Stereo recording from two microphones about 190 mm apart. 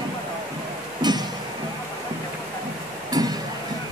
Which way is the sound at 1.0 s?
20° right (ahead or behind).